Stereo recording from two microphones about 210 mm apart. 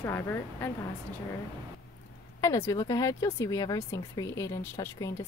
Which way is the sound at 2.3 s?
15° left (ahead or behind).